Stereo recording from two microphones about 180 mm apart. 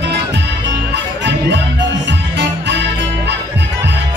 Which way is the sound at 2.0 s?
70° right (ahead or behind).